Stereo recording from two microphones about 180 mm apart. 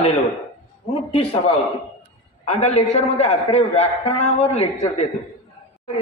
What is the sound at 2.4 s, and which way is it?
A man's voice, 40° left (ahead or behind).